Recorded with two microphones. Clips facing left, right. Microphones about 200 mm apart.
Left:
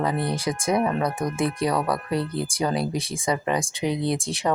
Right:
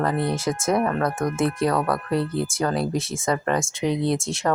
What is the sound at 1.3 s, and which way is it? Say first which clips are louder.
Speech: right 2 dB; centre (ahead or behind).